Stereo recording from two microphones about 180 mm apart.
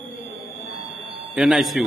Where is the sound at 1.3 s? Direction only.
Centre (ahead or behind).